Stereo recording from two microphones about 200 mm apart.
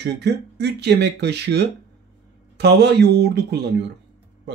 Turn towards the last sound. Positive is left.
turn(degrees=-55)  # may be behind; listen again after turning